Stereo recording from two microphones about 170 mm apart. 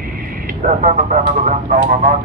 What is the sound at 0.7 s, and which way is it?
Speech, 45° right (ahead or behind).